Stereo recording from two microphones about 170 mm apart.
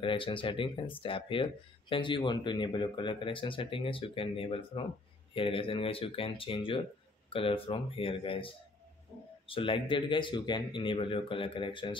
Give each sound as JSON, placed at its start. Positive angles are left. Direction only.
{"t": 0.0, "sound": "speech", "side_deg": 30}